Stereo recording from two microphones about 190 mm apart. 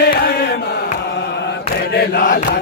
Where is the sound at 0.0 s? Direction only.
55° left (ahead or behind).